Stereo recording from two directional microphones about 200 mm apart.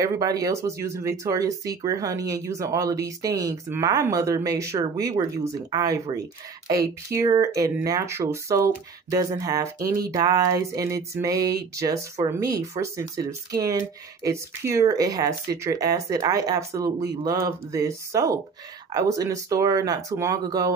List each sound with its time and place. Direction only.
0.0 s speech: 20° right (ahead or behind)